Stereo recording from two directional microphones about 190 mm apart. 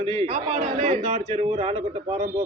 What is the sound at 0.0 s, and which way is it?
A man's voice, 35° right (ahead or behind).